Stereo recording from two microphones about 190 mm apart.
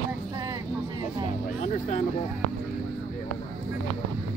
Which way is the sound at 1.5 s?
35° left (ahead or behind).